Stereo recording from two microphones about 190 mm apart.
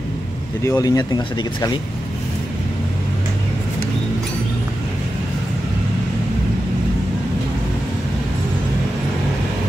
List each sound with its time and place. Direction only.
0.7 s speech: 20° left (ahead or behind)